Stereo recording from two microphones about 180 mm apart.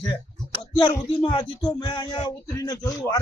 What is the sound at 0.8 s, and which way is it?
Speech, 25° left (ahead or behind).